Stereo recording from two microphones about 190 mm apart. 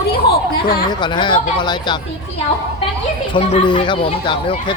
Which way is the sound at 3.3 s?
25° left (ahead or behind).